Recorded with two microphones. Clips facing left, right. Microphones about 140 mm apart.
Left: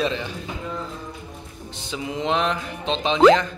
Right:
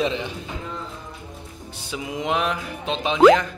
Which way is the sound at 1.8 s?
10° right (ahead or behind).